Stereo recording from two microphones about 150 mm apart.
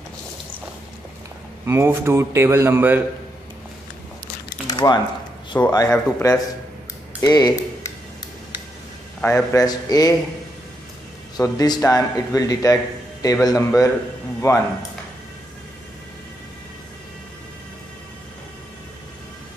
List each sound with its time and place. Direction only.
1.7 s speech: 15° right (ahead or behind)
4.6 s squish: 30° left (ahead or behind)
5.5 s a man's voice: 15° left (ahead or behind)
9.2 s speech: 20° left (ahead or behind)
11.3 s speech: 25° left (ahead or behind)